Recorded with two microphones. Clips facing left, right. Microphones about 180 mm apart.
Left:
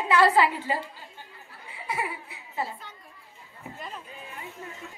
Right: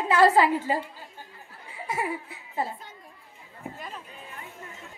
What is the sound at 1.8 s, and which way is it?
Laughter, 45° right (ahead or behind).